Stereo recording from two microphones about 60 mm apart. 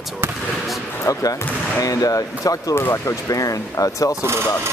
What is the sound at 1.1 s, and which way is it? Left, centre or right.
Speech, left.